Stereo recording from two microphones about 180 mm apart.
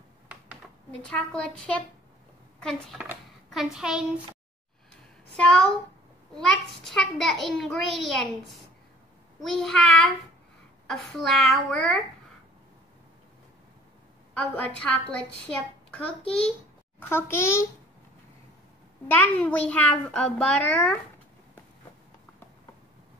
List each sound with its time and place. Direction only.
1.0 s a child's voice: 5° left (ahead or behind)
5.3 s a child's voice: 5° left (ahead or behind)
9.4 s a child's voice: centre (ahead or behind)
14.5 s a child's voice: 5° left (ahead or behind)
19.0 s a child's voice: 10° left (ahead or behind)